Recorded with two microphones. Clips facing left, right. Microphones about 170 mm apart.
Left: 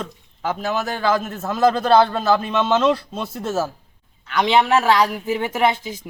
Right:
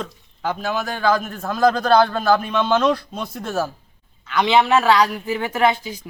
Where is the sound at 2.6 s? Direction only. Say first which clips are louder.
Even; 25° left (ahead or behind).